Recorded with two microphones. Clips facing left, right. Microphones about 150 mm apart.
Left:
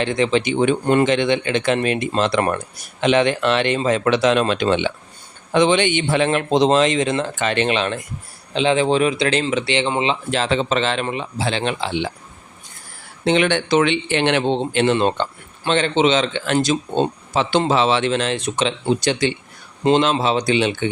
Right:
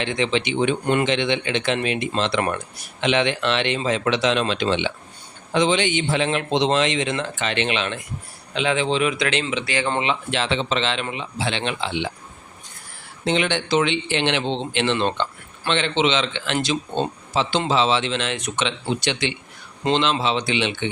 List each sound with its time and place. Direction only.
0.0 s speech: 40° left (ahead or behind)
9.6 s speech: 25° left (ahead or behind)
10.0 s speech: 35° left (ahead or behind)
13.2 s speech: 60° left (ahead or behind); by 20.9 s 45° left (ahead or behind)